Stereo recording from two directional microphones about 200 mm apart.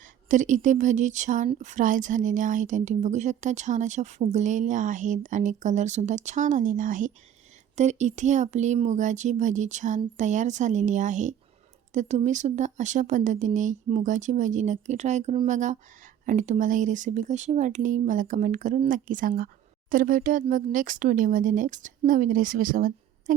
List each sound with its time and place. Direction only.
0.0 s a woman's voice: 40° right (ahead or behind)